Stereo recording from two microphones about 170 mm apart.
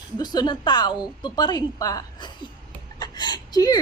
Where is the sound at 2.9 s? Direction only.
25° left (ahead or behind).